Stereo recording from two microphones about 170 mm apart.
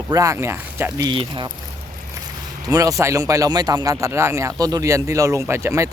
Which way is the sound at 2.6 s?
20° right (ahead or behind).